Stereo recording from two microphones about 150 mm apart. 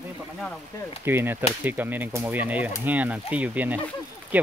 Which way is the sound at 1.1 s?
15° right (ahead or behind).